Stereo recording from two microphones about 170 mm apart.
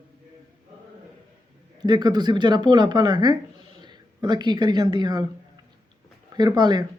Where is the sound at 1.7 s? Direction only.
25° right (ahead or behind).